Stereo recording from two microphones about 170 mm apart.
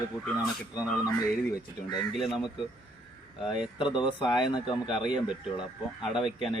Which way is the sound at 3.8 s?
30° left (ahead or behind).